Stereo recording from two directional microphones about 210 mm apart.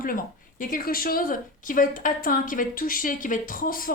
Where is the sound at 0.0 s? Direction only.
40° left (ahead or behind).